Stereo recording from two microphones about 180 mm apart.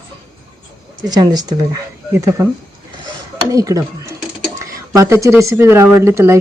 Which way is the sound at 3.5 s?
20° right (ahead or behind).